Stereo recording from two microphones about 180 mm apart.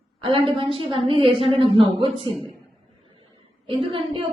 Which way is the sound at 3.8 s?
30° right (ahead or behind).